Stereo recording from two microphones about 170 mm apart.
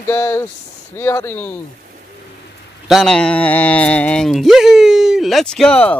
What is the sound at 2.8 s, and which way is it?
Speech, centre (ahead or behind).